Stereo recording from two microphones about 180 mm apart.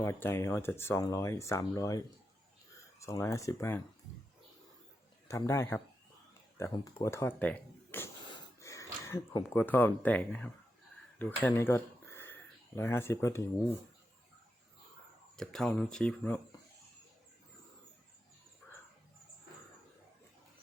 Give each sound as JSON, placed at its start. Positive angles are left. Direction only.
{"t": 0.0, "sound": "speech", "side_deg": 10}
{"t": 5.3, "sound": "speech", "side_deg": 15}
{"t": 15.4, "sound": "speech", "side_deg": 5}